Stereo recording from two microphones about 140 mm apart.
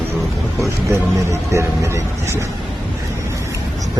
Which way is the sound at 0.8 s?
20° right (ahead or behind).